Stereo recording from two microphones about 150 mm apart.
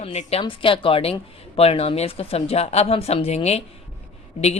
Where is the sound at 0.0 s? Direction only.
45° left (ahead or behind).